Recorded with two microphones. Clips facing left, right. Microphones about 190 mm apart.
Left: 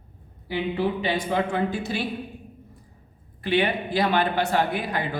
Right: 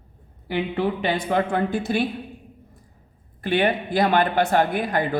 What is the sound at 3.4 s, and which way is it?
Speech, 50° right (ahead or behind).